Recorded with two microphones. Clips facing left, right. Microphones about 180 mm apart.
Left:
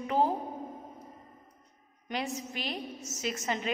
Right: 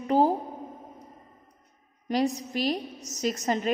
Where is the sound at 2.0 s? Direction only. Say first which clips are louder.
Right 9 dB; 35° right (ahead or behind).